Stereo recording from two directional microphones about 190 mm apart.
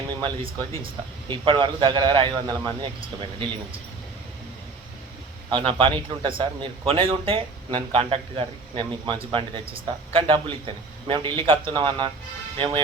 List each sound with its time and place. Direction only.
1.3 s a man's voice: 25° right (ahead or behind)
5.5 s a man's voice: 25° right (ahead or behind)